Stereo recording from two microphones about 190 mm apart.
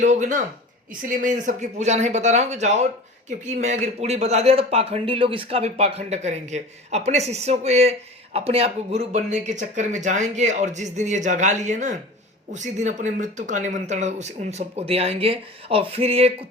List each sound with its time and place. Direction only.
0.0 s speech: 40° right (ahead or behind)